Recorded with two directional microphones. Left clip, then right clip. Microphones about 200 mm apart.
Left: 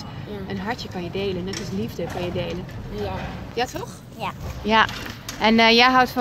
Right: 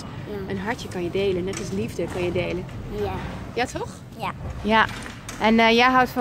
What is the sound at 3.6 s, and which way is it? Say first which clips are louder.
Speech: even; 15° right (ahead or behind).